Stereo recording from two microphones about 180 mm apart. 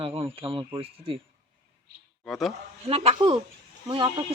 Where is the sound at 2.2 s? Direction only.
Centre (ahead or behind).